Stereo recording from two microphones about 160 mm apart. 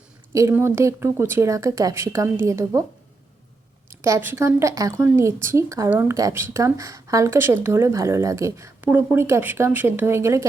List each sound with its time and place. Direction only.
0.3 s speech: 15° right (ahead or behind)
3.8 s speech: 20° right (ahead or behind)